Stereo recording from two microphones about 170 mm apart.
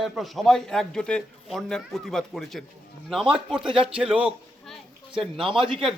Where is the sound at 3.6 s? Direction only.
30° right (ahead or behind).